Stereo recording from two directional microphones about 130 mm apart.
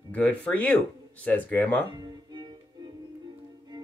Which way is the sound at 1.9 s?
35° right (ahead or behind).